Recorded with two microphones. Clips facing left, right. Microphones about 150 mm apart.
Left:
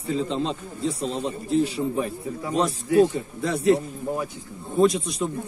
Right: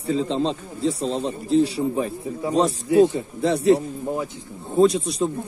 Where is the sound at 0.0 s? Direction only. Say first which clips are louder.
Right 3 dB; 35° right (ahead or behind).